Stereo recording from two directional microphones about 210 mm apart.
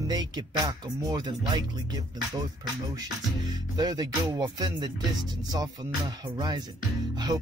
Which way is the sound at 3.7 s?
20° right (ahead or behind).